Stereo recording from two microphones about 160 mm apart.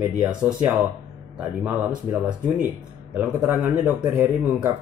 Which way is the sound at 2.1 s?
40° left (ahead or behind).